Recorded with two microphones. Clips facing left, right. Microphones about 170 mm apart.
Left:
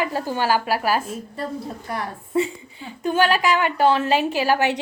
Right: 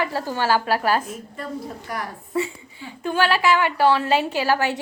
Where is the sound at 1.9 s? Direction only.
20° left (ahead or behind).